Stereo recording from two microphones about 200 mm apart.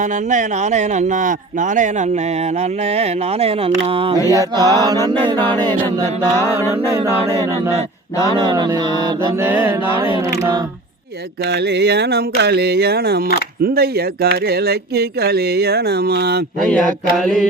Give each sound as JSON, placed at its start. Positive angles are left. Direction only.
{"t": 0.0, "sound": "speech", "side_deg": -40}
{"t": 4.3, "sound": "mantra", "side_deg": -15}
{"t": 6.6, "sound": "a capella", "side_deg": -15}
{"t": 8.4, "sound": "mantra", "side_deg": -20}
{"t": 8.9, "sound": "a capella", "side_deg": -20}
{"t": 11.4, "sound": "a sound", "side_deg": -60}
{"t": 13.6, "sound": "speech", "side_deg": -50}
{"t": 16.6, "sound": "mantra", "side_deg": 5}